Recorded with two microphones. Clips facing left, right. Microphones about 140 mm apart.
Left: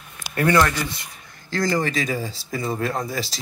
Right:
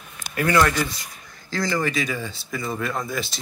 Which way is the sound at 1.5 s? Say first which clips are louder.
Left 3 dB; 50° left (ahead or behind).